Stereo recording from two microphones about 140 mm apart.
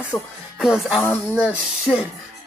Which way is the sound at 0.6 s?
5° right (ahead or behind).